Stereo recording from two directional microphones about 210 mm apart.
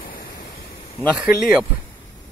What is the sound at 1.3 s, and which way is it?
Speech, 45° left (ahead or behind).